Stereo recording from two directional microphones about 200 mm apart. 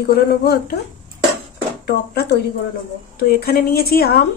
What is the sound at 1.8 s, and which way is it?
Speech, 55° left (ahead or behind).